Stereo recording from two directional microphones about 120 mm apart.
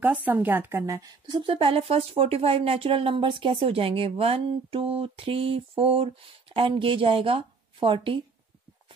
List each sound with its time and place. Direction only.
0.0 s a woman's voice: 15° right (ahead or behind)
1.2 s a woman's voice: 40° right (ahead or behind)